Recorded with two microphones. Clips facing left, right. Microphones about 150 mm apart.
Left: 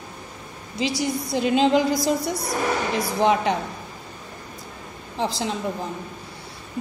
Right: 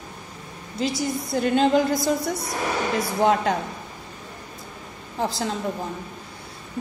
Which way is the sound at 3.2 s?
Centre (ahead or behind).